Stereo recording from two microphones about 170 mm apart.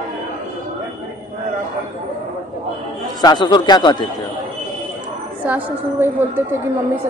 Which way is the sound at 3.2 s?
25° left (ahead or behind).